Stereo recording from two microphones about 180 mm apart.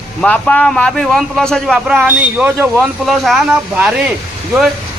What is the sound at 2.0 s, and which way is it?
A man's voice, 10° right (ahead or behind).